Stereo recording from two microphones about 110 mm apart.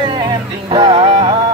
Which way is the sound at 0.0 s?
40° right (ahead or behind).